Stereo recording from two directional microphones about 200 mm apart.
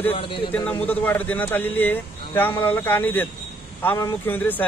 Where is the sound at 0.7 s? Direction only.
10° left (ahead or behind).